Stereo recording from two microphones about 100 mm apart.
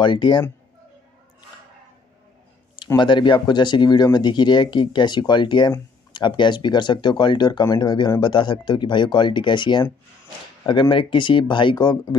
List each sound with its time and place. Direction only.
0.0 s speech: 50° left (ahead or behind)
3.0 s speech: 50° left (ahead or behind)